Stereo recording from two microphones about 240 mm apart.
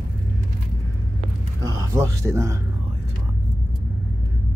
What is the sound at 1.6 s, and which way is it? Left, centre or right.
A man's voice, centre.